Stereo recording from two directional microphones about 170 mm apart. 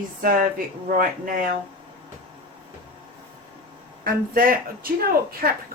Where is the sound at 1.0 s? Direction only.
55° right (ahead or behind).